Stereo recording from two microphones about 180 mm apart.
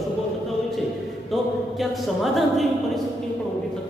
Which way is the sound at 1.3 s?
Centre (ahead or behind).